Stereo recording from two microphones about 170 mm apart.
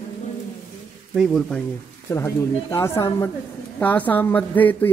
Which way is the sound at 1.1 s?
Centre (ahead or behind).